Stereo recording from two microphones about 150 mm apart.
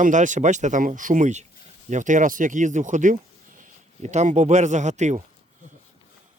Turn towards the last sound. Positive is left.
turn(degrees=-50)  # may be behind; listen again after turning